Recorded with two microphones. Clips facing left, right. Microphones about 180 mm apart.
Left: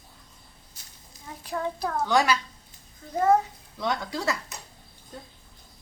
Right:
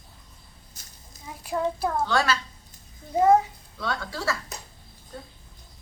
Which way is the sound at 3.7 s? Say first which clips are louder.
Left 2 dB; 20° left (ahead or behind).